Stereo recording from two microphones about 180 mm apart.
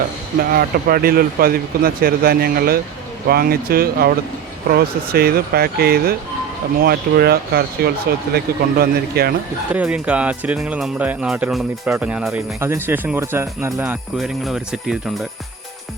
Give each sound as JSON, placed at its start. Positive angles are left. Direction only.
{"t": 0.5, "sound": "speech", "side_deg": -55}
{"t": 9.7, "sound": "speech", "side_deg": -5}
{"t": 12.5, "sound": "speech", "side_deg": -15}